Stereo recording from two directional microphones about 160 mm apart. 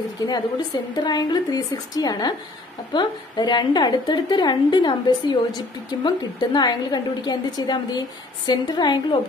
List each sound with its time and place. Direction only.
0.2 s a woman's voice: 25° left (ahead or behind)